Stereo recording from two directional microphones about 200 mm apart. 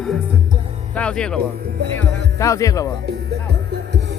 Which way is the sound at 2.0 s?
15° left (ahead or behind).